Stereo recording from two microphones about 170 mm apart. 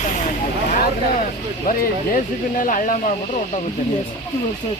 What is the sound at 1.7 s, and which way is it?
Speech, 50° left (ahead or behind).